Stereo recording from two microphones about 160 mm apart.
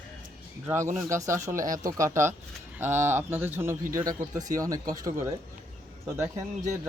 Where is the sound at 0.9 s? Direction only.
20° right (ahead or behind).